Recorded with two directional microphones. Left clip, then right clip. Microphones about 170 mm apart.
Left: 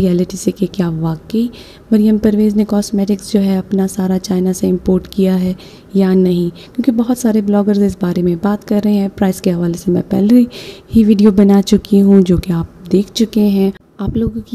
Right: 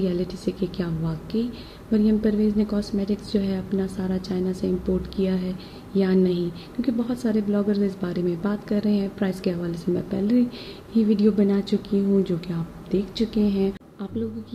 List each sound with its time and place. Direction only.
0.0 s a woman's voice: 60° left (ahead or behind)